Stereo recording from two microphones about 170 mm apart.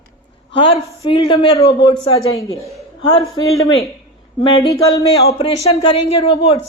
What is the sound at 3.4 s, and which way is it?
Speech, 25° left (ahead or behind).